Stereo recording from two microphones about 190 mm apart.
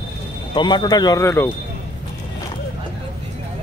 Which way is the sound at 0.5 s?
25° left (ahead or behind).